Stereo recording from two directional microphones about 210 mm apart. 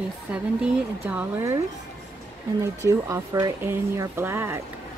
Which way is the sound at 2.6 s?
15° right (ahead or behind).